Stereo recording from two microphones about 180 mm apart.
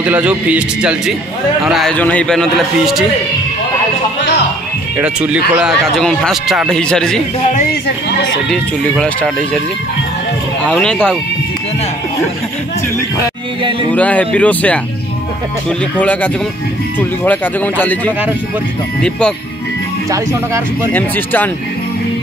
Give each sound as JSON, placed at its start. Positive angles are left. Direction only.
{"t": 0.0, "sound": "speech", "side_deg": -5}
{"t": 5.0, "sound": "speech", "side_deg": -5}
{"t": 8.5, "sound": "speech", "side_deg": 5}
{"t": 10.6, "sound": "speech", "side_deg": 5}
{"t": 13.9, "sound": "speech", "side_deg": 10}
{"t": 16.0, "sound": "speech", "side_deg": 5}
{"t": 20.1, "sound": "speech", "side_deg": -15}
{"t": 20.9, "sound": "speech", "side_deg": 10}